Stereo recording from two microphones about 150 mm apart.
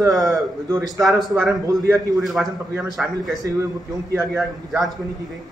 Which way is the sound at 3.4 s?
20° right (ahead or behind).